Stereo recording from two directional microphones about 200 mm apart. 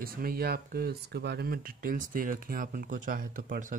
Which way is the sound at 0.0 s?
45° right (ahead or behind).